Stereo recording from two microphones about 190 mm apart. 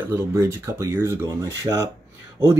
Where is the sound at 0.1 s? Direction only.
15° right (ahead or behind).